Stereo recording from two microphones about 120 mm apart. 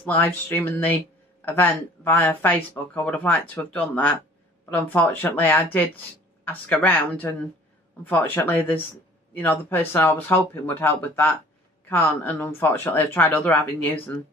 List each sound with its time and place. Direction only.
0.0 s speech: 15° left (ahead or behind)